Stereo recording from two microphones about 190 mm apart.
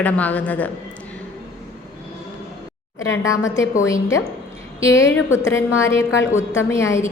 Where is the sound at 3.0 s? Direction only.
15° left (ahead or behind).